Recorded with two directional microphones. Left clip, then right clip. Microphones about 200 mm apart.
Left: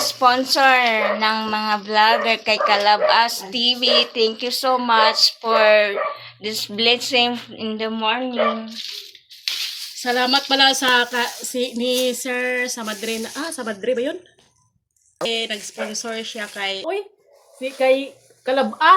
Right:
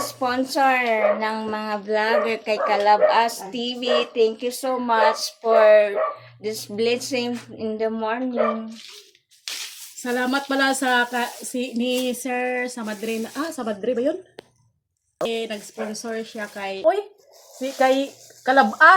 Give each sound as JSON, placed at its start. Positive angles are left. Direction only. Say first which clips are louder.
{"t": 0.0, "sound": "speech", "louder": "left 7 dB", "side_deg": 5}
{"t": 10.0, "sound": "speech", "louder": "left 5 dB", "side_deg": -40}
{"t": 15.3, "sound": "speech", "louder": "left 4 dB", "side_deg": -35}
{"t": 17.6, "sound": "speech", "louder": "left 1 dB", "side_deg": -20}